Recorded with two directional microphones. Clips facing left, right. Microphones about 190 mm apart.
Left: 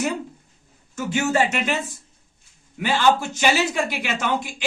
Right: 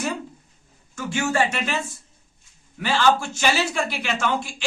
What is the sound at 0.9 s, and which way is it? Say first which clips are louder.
Speech: left 2 dB; 20° left (ahead or behind).